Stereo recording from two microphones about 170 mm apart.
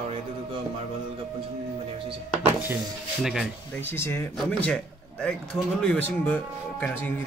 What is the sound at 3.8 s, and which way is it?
Speech, 15° left (ahead or behind).